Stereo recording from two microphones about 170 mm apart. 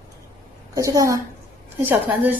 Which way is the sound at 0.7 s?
20° right (ahead or behind).